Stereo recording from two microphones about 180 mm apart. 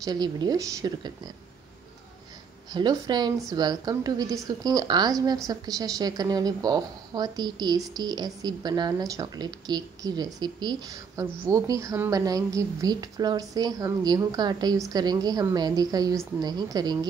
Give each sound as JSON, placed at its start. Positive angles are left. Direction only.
{"t": 0.0, "sound": "a woman's voice", "side_deg": -20}
{"t": 2.7, "sound": "a woman's voice", "side_deg": -25}